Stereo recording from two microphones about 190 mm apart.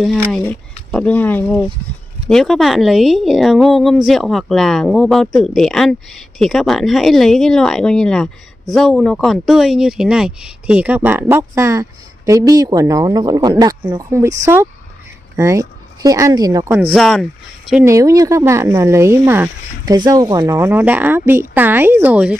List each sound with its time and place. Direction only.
0.0 s a woman's voice: centre (ahead or behind); by 16.8 s 15° right (ahead or behind)
16.9 s a woman's voice: centre (ahead or behind)
17.8 s speech: 15° right (ahead or behind)